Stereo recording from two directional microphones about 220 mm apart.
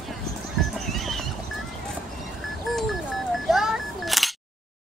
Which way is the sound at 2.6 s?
Centre (ahead or behind).